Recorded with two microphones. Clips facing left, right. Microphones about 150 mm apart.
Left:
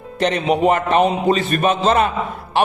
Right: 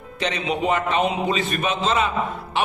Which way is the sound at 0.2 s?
55° left (ahead or behind).